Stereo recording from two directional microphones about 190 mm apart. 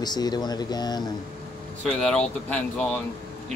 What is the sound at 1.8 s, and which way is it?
Speech, 5° left (ahead or behind).